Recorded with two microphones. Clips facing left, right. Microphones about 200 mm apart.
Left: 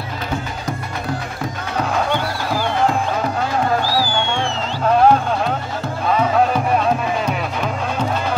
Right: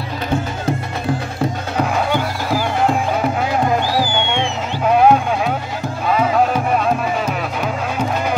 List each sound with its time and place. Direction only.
3.8 s music: 20° right (ahead or behind)